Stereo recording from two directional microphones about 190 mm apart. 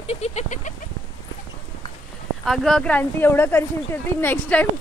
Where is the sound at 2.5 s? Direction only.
5° left (ahead or behind).